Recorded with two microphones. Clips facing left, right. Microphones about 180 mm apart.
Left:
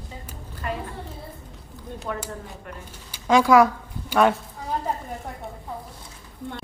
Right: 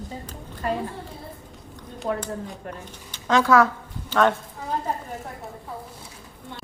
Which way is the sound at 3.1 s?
10° left (ahead or behind).